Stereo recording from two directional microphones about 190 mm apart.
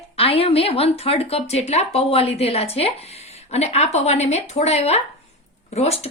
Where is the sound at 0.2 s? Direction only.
30° left (ahead or behind).